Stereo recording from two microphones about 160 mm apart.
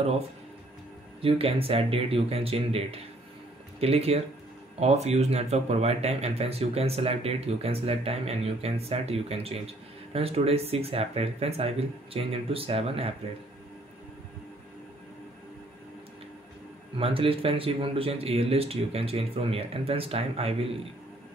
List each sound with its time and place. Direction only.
1.2 s speech: 35° right (ahead or behind)
17.0 s speech: 35° right (ahead or behind)